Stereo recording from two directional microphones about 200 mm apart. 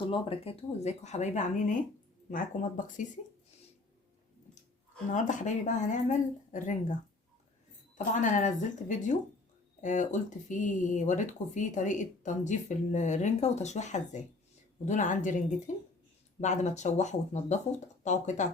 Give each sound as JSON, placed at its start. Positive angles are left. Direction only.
{"t": 0.0, "sound": "speech", "side_deg": 25}
{"t": 5.1, "sound": "speech", "side_deg": 40}
{"t": 7.9, "sound": "speech", "side_deg": 40}